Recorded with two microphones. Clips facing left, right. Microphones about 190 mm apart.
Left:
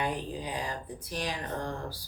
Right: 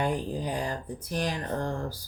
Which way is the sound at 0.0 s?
45° right (ahead or behind).